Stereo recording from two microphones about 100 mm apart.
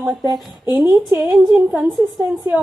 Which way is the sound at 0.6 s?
30° right (ahead or behind).